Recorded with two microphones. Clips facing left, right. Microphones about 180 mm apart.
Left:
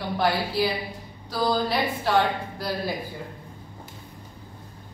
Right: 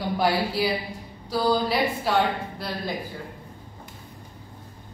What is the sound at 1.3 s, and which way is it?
Speech, 5° right (ahead or behind).